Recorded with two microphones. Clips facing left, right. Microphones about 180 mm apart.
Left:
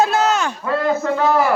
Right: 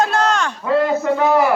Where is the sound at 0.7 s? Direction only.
15° right (ahead or behind).